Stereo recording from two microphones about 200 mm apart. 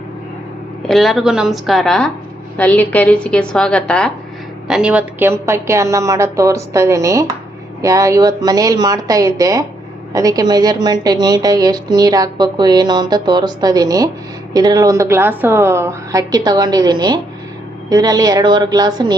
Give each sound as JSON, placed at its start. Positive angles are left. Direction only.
{"t": 0.9, "sound": "a woman's voice", "side_deg": 0}